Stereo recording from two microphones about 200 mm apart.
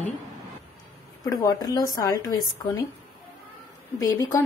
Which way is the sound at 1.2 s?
20° left (ahead or behind).